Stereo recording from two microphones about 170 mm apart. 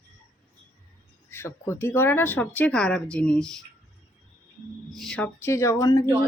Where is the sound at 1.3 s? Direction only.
15° left (ahead or behind).